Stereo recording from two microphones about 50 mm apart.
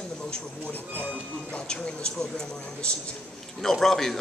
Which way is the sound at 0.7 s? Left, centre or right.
Left.